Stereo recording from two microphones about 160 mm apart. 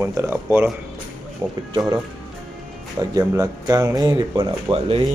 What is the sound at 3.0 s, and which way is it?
Speech, 20° right (ahead or behind).